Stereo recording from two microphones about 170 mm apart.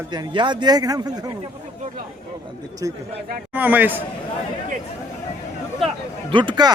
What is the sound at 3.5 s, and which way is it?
Speech, 10° right (ahead or behind).